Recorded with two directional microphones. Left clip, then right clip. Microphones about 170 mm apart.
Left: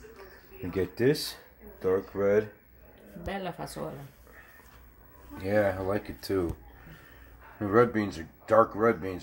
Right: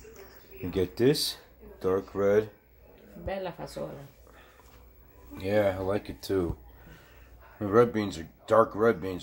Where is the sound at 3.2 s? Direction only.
65° left (ahead or behind).